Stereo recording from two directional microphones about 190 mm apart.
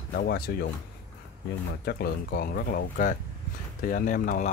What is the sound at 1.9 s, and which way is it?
Speech, 55° left (ahead or behind).